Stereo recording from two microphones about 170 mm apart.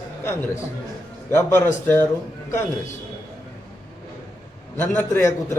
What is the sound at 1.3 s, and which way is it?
Speech, 15° left (ahead or behind).